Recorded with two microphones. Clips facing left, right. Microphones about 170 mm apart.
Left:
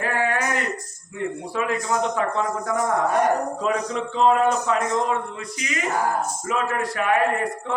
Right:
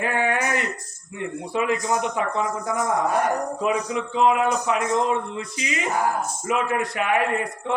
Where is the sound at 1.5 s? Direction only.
20° right (ahead or behind).